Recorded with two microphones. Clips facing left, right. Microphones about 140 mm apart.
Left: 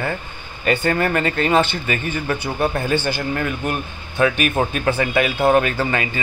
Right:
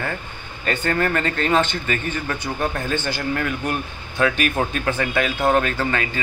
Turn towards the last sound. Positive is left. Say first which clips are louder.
# left 2 dB
turn(degrees=5)  # may be behind; listen again after turning